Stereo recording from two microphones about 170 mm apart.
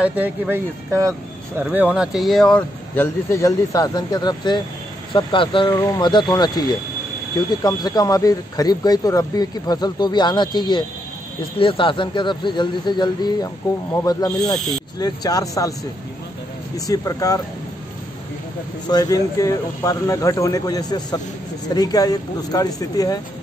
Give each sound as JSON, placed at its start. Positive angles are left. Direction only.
{"t": 0.0, "sound": "speech", "side_deg": -10}
{"t": 7.6, "sound": "speech", "side_deg": 25}
{"t": 16.7, "sound": "speech", "side_deg": 20}
{"t": 18.9, "sound": "speech", "side_deg": 20}